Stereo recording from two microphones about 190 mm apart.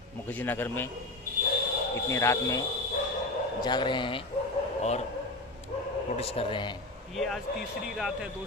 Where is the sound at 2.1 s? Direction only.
15° left (ahead or behind); by 5.0 s 35° left (ahead or behind).